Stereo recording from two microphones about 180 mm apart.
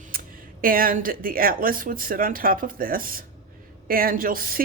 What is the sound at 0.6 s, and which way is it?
Speech, 50° right (ahead or behind).